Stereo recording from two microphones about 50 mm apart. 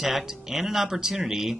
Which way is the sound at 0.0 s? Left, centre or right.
Centre.